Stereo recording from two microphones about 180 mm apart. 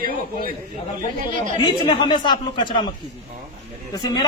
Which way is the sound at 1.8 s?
25° left (ahead or behind).